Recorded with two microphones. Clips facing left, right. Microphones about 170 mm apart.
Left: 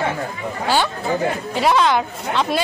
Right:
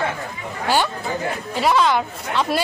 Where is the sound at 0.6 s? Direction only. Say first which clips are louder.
Even; 10° right (ahead or behind).